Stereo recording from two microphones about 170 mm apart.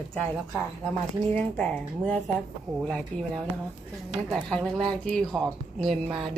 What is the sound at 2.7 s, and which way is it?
Speech, 20° right (ahead or behind).